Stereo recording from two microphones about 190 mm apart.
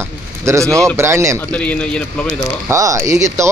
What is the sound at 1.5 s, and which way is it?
Speech, 5° left (ahead or behind).